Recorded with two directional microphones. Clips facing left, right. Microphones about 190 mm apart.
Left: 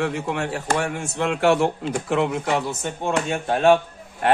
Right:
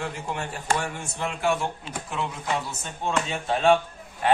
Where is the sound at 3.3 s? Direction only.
55° left (ahead or behind).